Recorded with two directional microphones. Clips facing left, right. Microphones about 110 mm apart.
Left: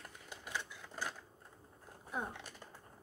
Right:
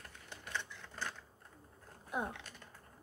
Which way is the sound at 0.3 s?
10° left (ahead or behind).